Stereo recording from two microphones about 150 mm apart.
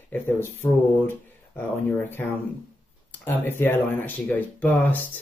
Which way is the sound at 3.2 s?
15° left (ahead or behind).